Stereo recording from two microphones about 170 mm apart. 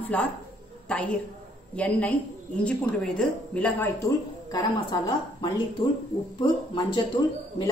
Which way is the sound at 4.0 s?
25° left (ahead or behind).